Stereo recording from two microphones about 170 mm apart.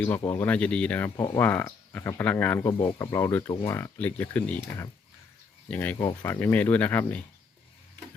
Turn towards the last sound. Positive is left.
turn(degrees=10)  # may be behind; listen again after turning